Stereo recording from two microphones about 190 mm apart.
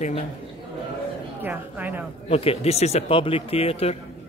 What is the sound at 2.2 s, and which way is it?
Speech, 30° left (ahead or behind).